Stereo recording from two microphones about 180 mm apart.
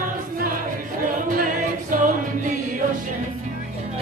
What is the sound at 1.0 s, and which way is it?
Music, 50° right (ahead or behind).